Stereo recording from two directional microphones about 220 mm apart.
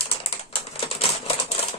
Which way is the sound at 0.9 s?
25° left (ahead or behind).